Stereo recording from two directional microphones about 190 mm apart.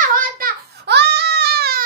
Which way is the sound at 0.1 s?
50° right (ahead or behind).